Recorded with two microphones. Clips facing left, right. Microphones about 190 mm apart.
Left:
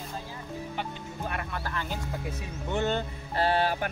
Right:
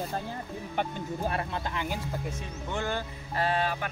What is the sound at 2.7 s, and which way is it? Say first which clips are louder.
Speech: left 4 dB; 20° left (ahead or behind).